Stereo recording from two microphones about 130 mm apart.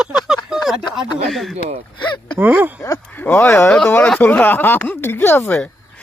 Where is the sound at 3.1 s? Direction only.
15° left (ahead or behind).